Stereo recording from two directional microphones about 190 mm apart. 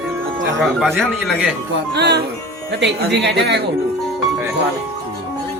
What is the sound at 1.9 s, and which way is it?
A woman's voice, 60° right (ahead or behind).